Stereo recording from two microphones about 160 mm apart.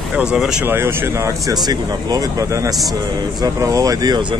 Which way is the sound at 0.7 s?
15° right (ahead or behind).